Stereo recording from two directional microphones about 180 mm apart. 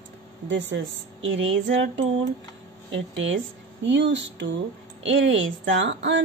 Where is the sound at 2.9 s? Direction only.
90° right.